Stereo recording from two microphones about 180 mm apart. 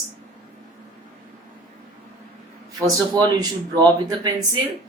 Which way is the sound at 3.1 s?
20° right (ahead or behind).